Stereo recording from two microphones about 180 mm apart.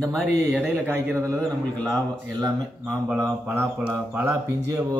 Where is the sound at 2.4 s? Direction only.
20° right (ahead or behind).